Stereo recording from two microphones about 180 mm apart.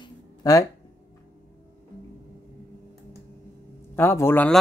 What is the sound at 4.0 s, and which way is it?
Speech, 10° left (ahead or behind).